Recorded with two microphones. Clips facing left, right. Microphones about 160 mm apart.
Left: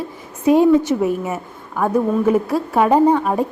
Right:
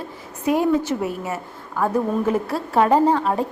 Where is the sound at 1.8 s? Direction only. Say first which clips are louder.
Left 4 dB; 5° left (ahead or behind).